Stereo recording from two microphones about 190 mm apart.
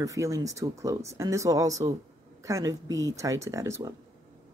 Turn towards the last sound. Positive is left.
turn(degrees=-15)  # may be behind; listen again after turning